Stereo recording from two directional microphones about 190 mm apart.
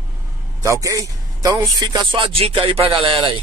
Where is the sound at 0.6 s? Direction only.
15° right (ahead or behind).